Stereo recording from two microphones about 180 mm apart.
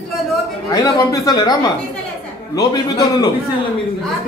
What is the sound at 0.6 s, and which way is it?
Speech, 20° left (ahead or behind).